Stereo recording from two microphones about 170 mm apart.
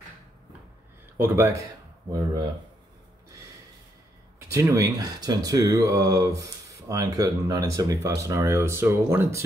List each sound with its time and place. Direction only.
1.2 s speech: 15° right (ahead or behind)
4.5 s speech: 20° right (ahead or behind)